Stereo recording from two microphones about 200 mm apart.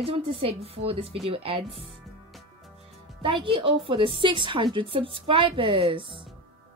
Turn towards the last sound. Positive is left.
turn(degrees=-25)  # may be behind; listen again after turning